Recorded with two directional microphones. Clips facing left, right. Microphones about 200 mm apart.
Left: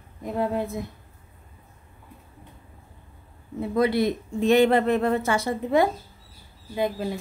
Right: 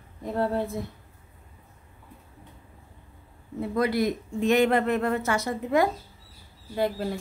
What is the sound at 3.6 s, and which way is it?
Speech, 25° left (ahead or behind).